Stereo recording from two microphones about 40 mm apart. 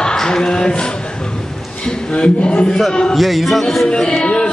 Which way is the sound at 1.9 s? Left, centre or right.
Left.